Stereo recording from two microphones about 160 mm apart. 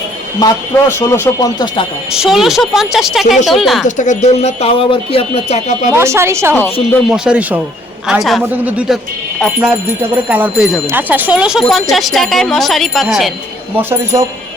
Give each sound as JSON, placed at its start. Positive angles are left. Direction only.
{"t": 0.3, "sound": "speech", "side_deg": 20}
{"t": 2.1, "sound": "speech", "side_deg": -5}
{"t": 3.8, "sound": "speech", "side_deg": 50}
{"t": 5.9, "sound": "a woman's voice", "side_deg": -15}
{"t": 10.2, "sound": "a woman's voice", "side_deg": -10}
{"t": 13.7, "sound": "a woman's voice", "side_deg": -15}